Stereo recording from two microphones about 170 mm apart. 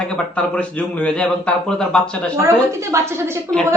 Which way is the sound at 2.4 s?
15° right (ahead or behind).